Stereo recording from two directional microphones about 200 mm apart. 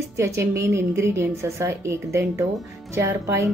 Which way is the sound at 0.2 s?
15° right (ahead or behind).